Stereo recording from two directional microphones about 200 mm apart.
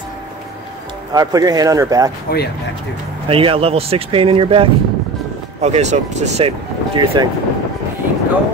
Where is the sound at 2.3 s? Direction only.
50° left (ahead or behind).